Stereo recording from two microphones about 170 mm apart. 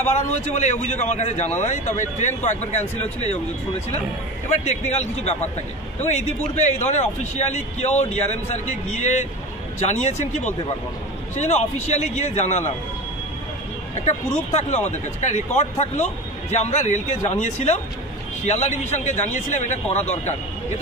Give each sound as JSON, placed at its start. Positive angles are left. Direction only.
{"t": 0.0, "sound": "a man's voice", "side_deg": 40}
{"t": 4.5, "sound": "a man's voice", "side_deg": 40}
{"t": 13.9, "sound": "speech", "side_deg": 40}